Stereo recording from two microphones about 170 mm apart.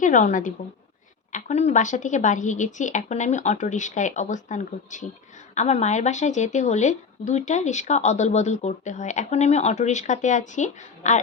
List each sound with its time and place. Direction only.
0.0 s speech: 50° left (ahead or behind)